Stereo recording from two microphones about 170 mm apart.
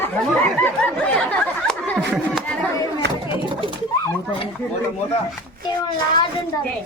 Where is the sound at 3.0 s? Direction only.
80° right.